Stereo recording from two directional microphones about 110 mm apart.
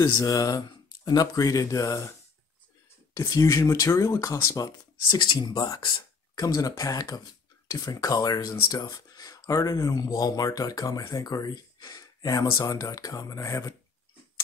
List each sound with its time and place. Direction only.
0.1 s speech: 30° left (ahead or behind)
3.2 s speech: 30° left (ahead or behind)